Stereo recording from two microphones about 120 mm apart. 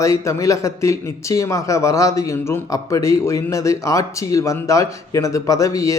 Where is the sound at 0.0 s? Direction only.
25° left (ahead or behind).